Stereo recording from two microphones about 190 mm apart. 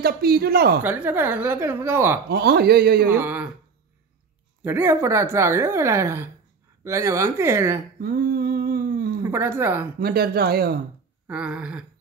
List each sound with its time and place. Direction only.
0.0 s speech: 55° right (ahead or behind)
0.8 s speech: 10° right (ahead or behind)
2.2 s speech: 55° right (ahead or behind)
3.1 s speech: 10° right (ahead or behind)
4.6 s speech: 10° right (ahead or behind)
8.0 s a sound: 55° right (ahead or behind)
9.2 s speech: 15° right (ahead or behind)
9.9 s speech: 55° right (ahead or behind)
11.2 s a sound: 5° right (ahead or behind)